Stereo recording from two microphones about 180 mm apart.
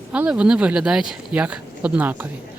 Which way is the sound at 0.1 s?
5° right (ahead or behind).